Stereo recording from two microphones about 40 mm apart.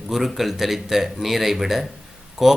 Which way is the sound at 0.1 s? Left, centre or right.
Centre.